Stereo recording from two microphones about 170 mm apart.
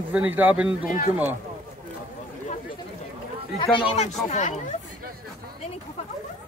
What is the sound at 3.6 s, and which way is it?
Speech, 35° left (ahead or behind).